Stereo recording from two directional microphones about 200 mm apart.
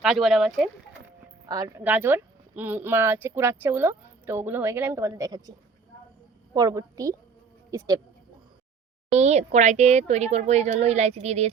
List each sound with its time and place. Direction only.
0.0 s speech: 5° right (ahead or behind)
1.5 s a woman's voice: 20° right (ahead or behind)
9.0 s a child's voice: 35° right (ahead or behind)